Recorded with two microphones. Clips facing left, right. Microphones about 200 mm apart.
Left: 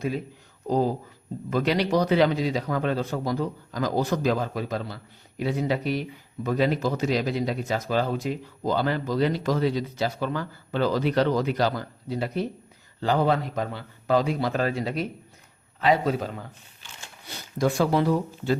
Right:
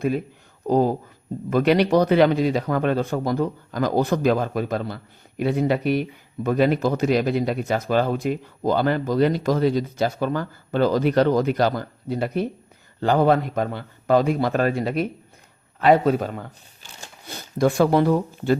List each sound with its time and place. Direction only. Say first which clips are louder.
0.7 s a man's voice: right 4 dB; 55° right (ahead or behind)